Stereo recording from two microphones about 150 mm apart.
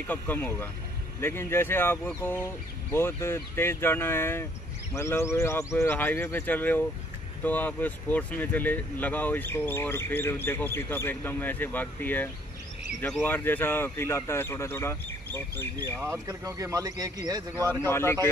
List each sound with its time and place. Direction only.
0.0 s speech: 10° left (ahead or behind)
16.0 s speech: 20° right (ahead or behind)
17.8 s speech: 15° left (ahead or behind)